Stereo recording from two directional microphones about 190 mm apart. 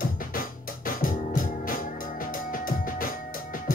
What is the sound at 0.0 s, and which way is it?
Keyboard, 45° left (ahead or behind).